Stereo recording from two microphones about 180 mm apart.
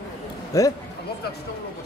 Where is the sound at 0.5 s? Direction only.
20° left (ahead or behind).